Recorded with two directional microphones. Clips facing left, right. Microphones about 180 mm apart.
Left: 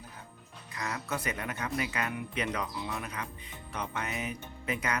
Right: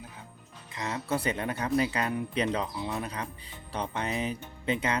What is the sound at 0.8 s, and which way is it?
Speech, 25° right (ahead or behind).